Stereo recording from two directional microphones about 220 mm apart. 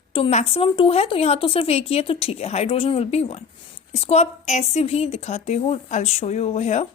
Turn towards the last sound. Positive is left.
turn(degrees=30)  # may be behind; listen again after turning